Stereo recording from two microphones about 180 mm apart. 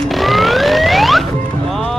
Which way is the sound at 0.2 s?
Centre (ahead or behind).